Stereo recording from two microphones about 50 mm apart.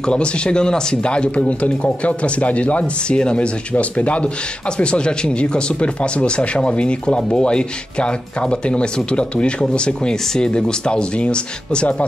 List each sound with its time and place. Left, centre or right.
0.0 s a man's voice: centre